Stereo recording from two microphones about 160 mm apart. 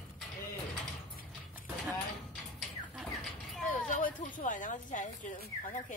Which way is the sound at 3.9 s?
55° left (ahead or behind).